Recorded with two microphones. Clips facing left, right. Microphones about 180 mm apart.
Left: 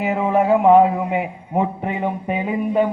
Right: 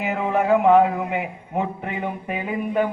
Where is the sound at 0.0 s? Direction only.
30° left (ahead or behind).